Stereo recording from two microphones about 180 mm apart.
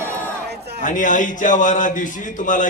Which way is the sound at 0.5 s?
65° right (ahead or behind).